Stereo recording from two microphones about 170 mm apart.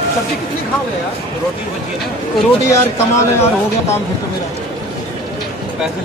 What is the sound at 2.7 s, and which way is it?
Speech, 15° left (ahead or behind).